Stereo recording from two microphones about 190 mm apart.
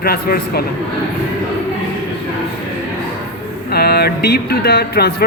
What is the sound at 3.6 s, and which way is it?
Speech, 55° left (ahead or behind).